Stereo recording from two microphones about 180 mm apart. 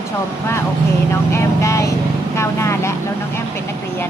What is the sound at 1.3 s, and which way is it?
Speech, 15° left (ahead or behind).